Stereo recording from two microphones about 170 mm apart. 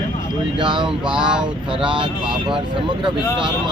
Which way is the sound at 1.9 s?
30° right (ahead or behind).